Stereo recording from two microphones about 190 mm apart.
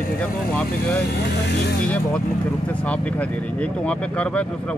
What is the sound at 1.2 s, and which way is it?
Speech, 60° left (ahead or behind).